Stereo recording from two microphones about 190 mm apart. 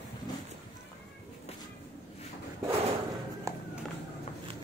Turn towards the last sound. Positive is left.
turn(degrees=-15)  # may be behind; listen again after turning